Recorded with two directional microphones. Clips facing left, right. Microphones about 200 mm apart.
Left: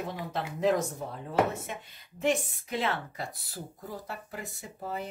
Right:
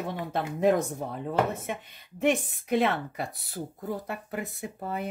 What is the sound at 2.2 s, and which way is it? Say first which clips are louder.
Speech: right 3 dB; 60° right (ahead or behind).